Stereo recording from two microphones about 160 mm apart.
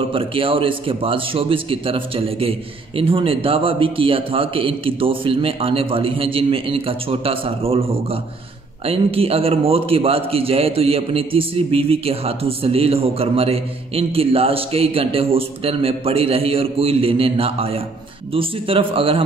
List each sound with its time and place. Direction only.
0.1 s a man's voice: 35° right (ahead or behind)